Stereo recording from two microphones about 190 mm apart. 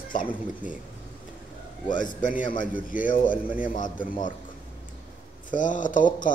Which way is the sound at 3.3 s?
5° right (ahead or behind).